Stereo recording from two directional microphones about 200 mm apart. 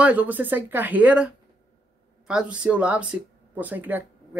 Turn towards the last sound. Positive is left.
turn(degrees=-10)  # may be behind; listen again after turning